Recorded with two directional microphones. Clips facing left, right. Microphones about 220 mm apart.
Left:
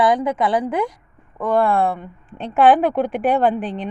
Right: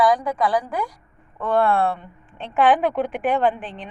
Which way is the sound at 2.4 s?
40° left (ahead or behind).